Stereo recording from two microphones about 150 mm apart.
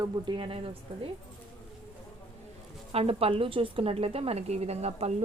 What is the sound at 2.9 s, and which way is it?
Speech, 40° right (ahead or behind).